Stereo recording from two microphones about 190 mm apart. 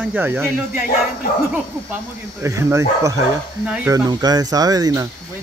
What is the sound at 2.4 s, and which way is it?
Speech, 15° right (ahead or behind).